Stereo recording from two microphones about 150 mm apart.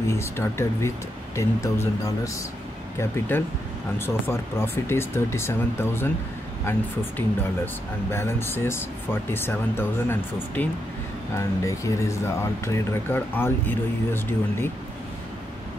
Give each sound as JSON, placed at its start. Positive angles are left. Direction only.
{"t": 0.1, "sound": "speech", "side_deg": 15}